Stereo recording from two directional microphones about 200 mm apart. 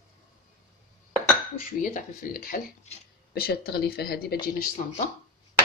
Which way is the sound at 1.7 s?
40° left (ahead or behind).